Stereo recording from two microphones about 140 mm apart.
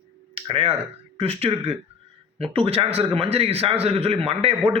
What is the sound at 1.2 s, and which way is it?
Speech, 45° right (ahead or behind).